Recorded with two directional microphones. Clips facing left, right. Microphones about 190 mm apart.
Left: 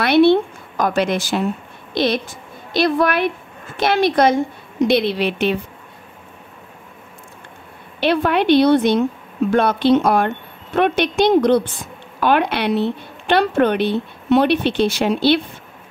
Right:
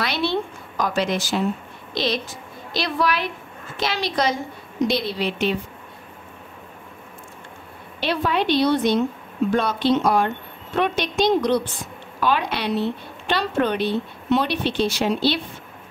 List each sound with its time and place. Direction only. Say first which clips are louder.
0.0 s a woman's voice: left 11 dB; 55° left (ahead or behind)
8.0 s a woman's voice: left 5 dB; 60° left (ahead or behind)